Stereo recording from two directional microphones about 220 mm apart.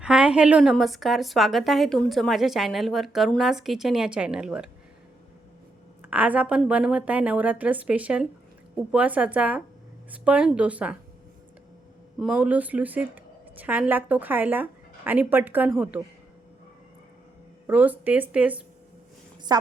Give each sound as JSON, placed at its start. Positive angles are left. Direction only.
{"t": 0.0, "sound": "a woman's voice", "side_deg": -5}
{"t": 6.0, "sound": "a woman's voice", "side_deg": -5}
{"t": 12.2, "sound": "a woman's voice", "side_deg": -5}
{"t": 17.7, "sound": "a woman's voice", "side_deg": -5}
{"t": 19.5, "sound": "a woman's voice", "side_deg": -20}